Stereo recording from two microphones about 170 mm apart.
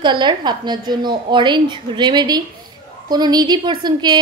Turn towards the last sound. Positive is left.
turn(degrees=-25)  # may be behind; listen again after turning